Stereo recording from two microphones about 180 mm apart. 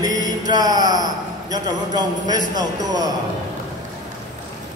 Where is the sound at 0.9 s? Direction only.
20° right (ahead or behind).